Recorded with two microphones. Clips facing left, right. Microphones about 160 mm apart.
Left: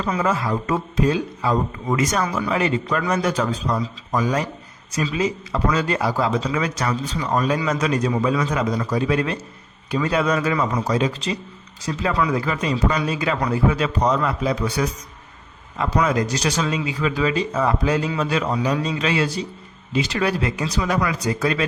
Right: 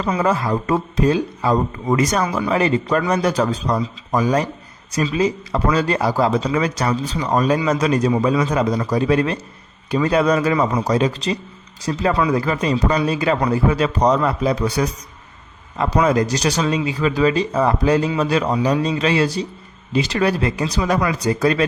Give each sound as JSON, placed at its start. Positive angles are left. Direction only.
{"t": 0.2, "sound": "speech", "side_deg": -40}
{"t": 16.0, "sound": "speech", "side_deg": -35}